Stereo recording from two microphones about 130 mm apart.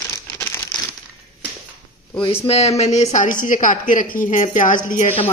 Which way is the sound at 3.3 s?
90° left.